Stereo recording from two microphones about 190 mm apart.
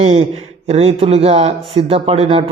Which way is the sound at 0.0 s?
30° right (ahead or behind).